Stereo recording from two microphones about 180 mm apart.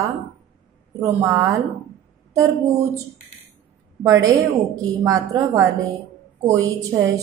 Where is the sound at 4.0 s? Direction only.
15° right (ahead or behind).